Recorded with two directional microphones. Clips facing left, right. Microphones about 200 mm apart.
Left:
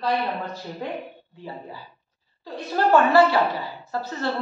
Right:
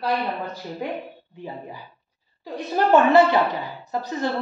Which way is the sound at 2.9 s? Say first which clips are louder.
Right 1 dB; 20° right (ahead or behind).